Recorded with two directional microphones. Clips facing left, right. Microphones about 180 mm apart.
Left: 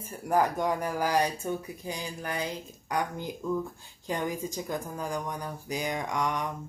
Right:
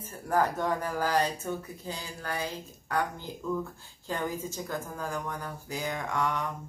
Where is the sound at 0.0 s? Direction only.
15° left (ahead or behind).